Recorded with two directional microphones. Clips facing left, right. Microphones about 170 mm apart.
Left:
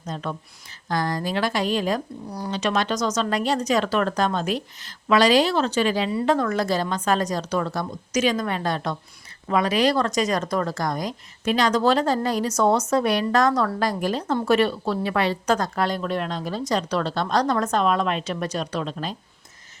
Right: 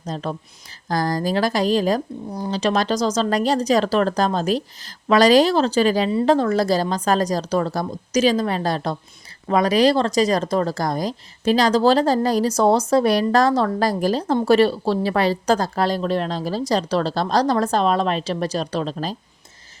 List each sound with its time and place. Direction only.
0.0 s speech: 35° right (ahead or behind)
6.1 s speech: 30° right (ahead or behind)